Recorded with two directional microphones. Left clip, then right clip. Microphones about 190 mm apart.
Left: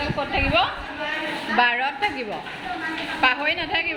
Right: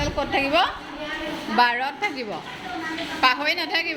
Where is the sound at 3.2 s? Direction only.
5° right (ahead or behind).